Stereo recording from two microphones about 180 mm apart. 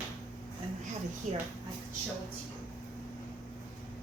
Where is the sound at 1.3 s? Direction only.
40° right (ahead or behind).